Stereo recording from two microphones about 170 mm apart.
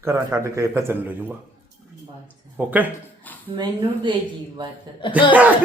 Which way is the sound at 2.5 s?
10° right (ahead or behind).